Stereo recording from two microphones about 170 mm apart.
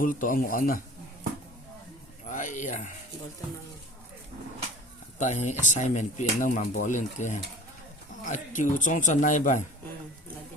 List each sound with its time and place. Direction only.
0.0 s a man's voice: 55° left (ahead or behind)
2.3 s speech: 50° left (ahead or behind)
5.2 s speech: 45° left (ahead or behind)